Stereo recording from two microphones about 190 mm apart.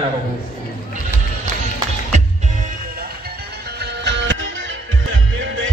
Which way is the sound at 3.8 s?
65° right (ahead or behind).